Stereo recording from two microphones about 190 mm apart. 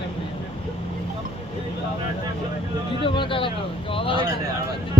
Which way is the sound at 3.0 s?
25° left (ahead or behind).